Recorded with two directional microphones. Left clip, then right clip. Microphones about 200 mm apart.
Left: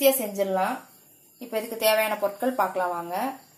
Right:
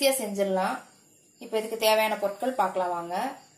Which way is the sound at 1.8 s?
20° left (ahead or behind).